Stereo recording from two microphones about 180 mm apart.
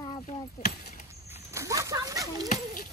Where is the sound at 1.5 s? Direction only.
15° right (ahead or behind).